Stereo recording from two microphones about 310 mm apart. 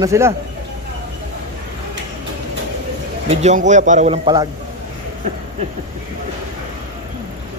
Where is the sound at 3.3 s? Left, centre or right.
Right.